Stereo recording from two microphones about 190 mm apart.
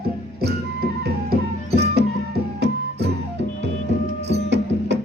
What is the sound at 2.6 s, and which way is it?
Music, 60° right (ahead or behind).